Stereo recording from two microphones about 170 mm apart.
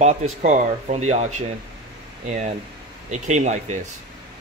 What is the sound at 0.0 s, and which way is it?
Speech, 45° right (ahead or behind).